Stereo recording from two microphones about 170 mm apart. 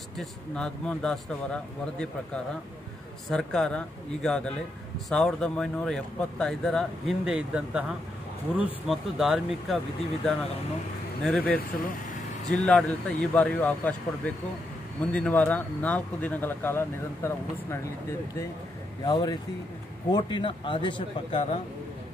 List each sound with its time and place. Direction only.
0.2 s speech: 5° left (ahead or behind)
11.2 s speech: 5° left (ahead or behind)
11.5 s speech: 55° left (ahead or behind)
12.4 s speech: 5° left (ahead or behind)
19.0 s speech: 25° left (ahead or behind)